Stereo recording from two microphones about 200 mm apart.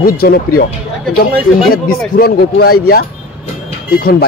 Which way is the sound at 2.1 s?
50° left (ahead or behind).